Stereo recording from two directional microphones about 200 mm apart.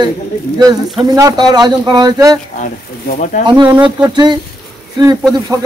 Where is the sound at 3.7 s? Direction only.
20° right (ahead or behind).